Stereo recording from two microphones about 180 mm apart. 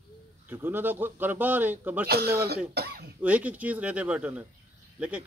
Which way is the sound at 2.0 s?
60° right (ahead or behind).